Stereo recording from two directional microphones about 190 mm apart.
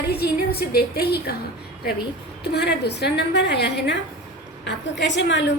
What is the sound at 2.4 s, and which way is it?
A woman's voice, 60° left (ahead or behind).